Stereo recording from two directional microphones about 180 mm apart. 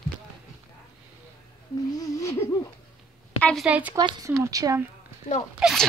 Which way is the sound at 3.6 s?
5° right (ahead or behind).